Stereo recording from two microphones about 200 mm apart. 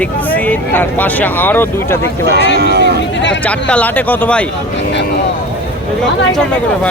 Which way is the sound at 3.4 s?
5° left (ahead or behind).